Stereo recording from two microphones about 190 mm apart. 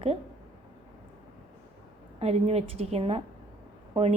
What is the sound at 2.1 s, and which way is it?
A woman's voice, 35° right (ahead or behind).